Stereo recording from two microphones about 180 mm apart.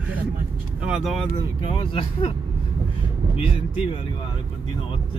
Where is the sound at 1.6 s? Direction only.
30° left (ahead or behind).